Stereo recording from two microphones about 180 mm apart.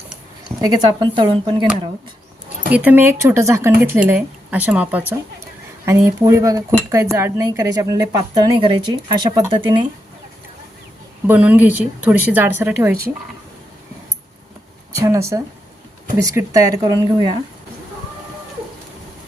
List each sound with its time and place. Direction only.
0.6 s speech: 25° right (ahead or behind)
2.7 s speech: 10° right (ahead or behind)
11.3 s speech: 10° right (ahead or behind)
15.0 s speech: 15° right (ahead or behind)